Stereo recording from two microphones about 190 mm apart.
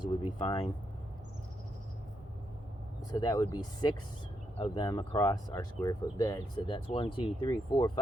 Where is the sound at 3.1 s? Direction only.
20° left (ahead or behind).